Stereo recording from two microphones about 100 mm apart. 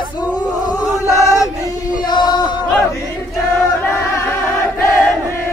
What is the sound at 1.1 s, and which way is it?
Chant, 35° left (ahead or behind).